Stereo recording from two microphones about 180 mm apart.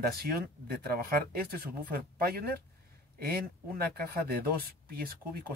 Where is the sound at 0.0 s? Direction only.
60° right (ahead or behind).